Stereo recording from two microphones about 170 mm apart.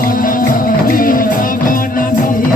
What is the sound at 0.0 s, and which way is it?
Music, 55° left (ahead or behind).